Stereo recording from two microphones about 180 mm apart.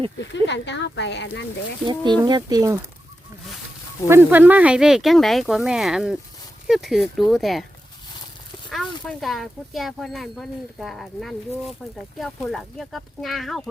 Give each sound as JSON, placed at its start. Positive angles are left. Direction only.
{"t": 0.2, "sound": "speech", "side_deg": 80}
{"t": 1.8, "sound": "speech", "side_deg": -25}
{"t": 4.1, "sound": "speech", "side_deg": -10}
{"t": 9.0, "sound": "speech", "side_deg": 0}